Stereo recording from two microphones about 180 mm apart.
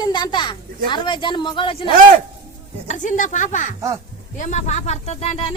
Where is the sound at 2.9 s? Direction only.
45° left (ahead or behind).